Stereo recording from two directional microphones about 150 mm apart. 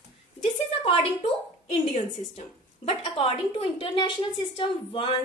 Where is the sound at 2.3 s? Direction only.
40° left (ahead or behind).